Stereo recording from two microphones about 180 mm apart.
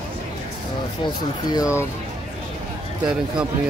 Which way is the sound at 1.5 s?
15° left (ahead or behind).